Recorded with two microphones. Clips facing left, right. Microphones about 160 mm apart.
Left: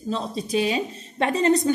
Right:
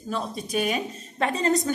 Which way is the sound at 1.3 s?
35° right (ahead or behind).